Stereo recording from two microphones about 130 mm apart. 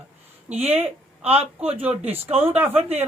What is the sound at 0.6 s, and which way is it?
A woman's voice, 50° right (ahead or behind).